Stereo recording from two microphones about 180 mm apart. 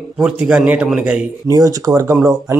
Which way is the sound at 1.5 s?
20° right (ahead or behind).